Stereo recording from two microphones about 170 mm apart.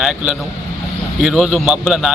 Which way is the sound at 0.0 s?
5° right (ahead or behind).